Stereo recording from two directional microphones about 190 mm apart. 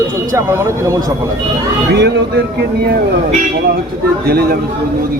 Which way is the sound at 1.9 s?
60° right (ahead or behind).